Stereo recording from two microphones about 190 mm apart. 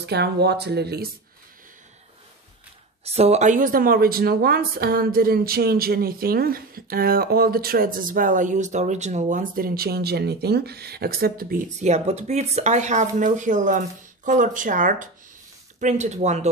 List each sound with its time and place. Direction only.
0.0 s speech: 60° right (ahead or behind)
3.1 s speech: 35° right (ahead or behind); by 11.6 s 50° right (ahead or behind)
11.8 s speech: 35° right (ahead or behind)